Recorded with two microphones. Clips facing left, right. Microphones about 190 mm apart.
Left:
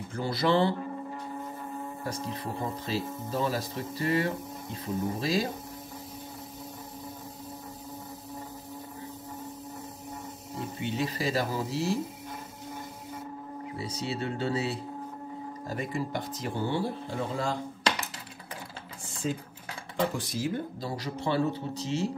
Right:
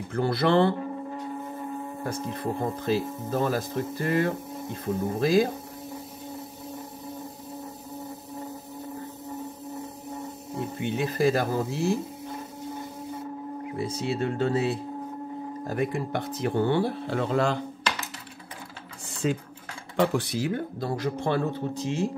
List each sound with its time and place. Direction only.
0.1 s speech: 55° right (ahead or behind)
2.0 s speech: 55° right (ahead or behind)
10.8 s speech: 55° right (ahead or behind)
13.7 s speech: 55° right (ahead or behind); by 17.6 s 70° right (ahead or behind)
19.2 s speech: 80° right
20.0 s speech: 65° right (ahead or behind)